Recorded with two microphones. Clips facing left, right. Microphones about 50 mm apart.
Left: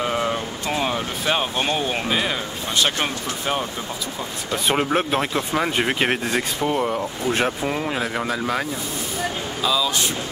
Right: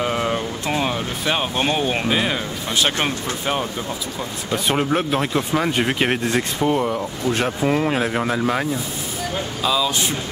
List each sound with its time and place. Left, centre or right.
0.0 s a sound: centre
2.0 s speech: centre
4.7 s speech: centre
7.2 s speech: centre
7.6 s speech: centre